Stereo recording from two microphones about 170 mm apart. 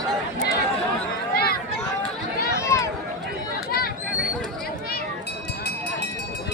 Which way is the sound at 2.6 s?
15° left (ahead or behind).